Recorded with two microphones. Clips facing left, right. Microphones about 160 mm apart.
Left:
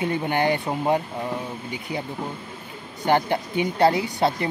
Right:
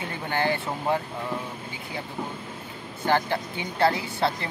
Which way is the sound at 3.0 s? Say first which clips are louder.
Left 3 dB; 15° left (ahead or behind).